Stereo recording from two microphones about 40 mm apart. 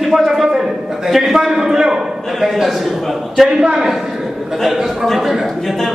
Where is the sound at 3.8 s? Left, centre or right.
Centre.